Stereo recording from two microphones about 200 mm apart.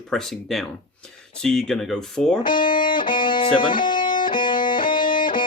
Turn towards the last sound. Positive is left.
turn(degrees=25)  # may be behind; listen again after turning